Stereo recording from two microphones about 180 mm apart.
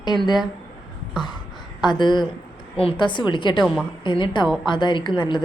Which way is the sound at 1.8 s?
25° left (ahead or behind).